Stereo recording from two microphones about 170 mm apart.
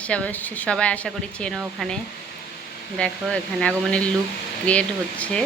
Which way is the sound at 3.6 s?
5° left (ahead or behind).